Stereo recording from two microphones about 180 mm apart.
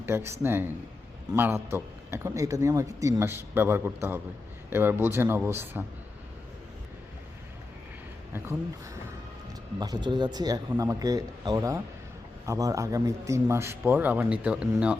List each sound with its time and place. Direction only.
0.0 s a man's voice: 15° right (ahead or behind)
9.7 s a man's voice: 20° right (ahead or behind); by 14.7 s 5° right (ahead or behind)